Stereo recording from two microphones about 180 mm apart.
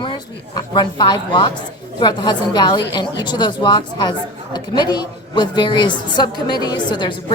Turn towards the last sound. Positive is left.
turn(degrees=25)  # may be behind; listen again after turning